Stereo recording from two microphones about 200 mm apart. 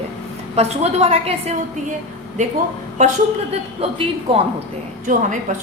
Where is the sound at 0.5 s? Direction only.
30° right (ahead or behind).